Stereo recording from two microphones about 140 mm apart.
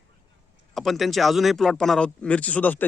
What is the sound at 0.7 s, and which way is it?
Speech, centre (ahead or behind).